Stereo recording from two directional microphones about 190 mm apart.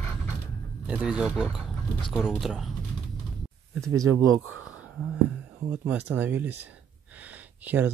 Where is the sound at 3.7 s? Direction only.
15° right (ahead or behind).